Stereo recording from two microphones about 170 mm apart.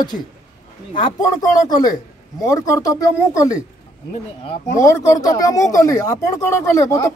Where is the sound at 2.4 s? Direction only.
20° left (ahead or behind).